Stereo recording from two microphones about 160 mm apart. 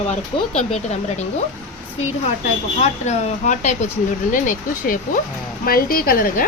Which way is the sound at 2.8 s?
45° left (ahead or behind).